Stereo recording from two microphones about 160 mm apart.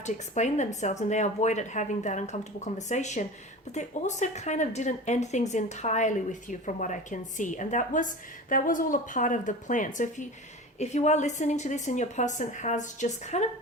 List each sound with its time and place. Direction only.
0.0 s a woman's voice: 45° left (ahead or behind)